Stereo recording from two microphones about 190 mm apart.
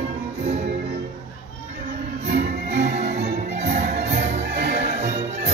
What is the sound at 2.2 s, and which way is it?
Music, 35° right (ahead or behind).